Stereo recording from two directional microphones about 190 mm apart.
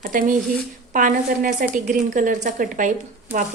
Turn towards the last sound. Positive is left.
turn(degrees=-40)  # may be behind; listen again after turning